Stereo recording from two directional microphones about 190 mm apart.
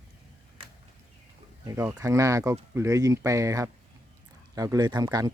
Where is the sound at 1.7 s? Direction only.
15° right (ahead or behind).